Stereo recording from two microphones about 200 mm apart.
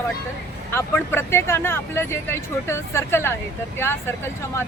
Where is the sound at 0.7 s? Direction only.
10° left (ahead or behind).